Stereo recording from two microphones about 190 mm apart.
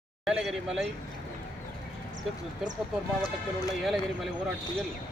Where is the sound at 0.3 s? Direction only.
Centre (ahead or behind).